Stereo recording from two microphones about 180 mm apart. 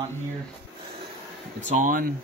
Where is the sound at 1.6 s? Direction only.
40° right (ahead or behind).